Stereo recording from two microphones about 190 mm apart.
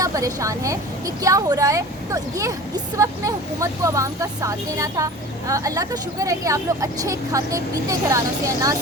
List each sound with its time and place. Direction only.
0.0 s speech: 15° right (ahead or behind)